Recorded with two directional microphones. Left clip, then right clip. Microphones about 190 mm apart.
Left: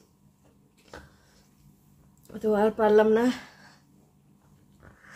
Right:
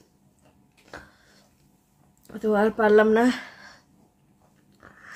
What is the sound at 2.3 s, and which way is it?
Speech, 10° right (ahead or behind).